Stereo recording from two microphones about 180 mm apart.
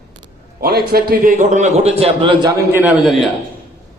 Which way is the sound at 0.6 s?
60° right (ahead or behind).